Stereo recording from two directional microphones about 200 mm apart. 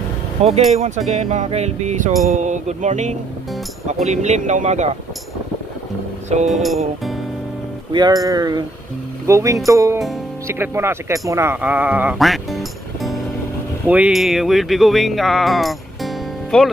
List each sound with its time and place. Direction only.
0.4 s speech: 30° right (ahead or behind)
6.5 s speech: centre (ahead or behind)
7.9 s speech: 20° right (ahead or behind); by 16.7 s centre (ahead or behind)